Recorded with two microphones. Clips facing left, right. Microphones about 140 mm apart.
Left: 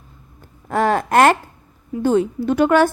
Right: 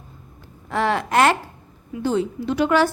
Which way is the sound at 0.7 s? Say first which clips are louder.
Left 4 dB; 45° left (ahead or behind).